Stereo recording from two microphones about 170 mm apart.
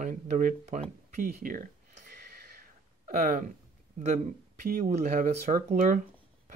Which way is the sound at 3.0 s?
50° right (ahead or behind).